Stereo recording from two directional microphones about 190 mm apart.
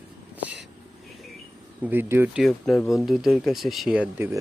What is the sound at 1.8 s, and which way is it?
Speech, 10° right (ahead or behind).